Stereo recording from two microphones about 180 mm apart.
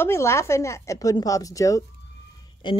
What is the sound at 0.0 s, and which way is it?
Speech, 15° left (ahead or behind).